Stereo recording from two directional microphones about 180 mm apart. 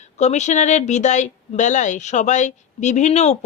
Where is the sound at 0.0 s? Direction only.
40° left (ahead or behind).